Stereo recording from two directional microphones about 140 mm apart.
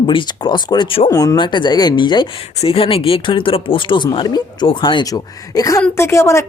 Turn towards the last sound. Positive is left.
turn(degrees=20)  # may be behind; listen again after turning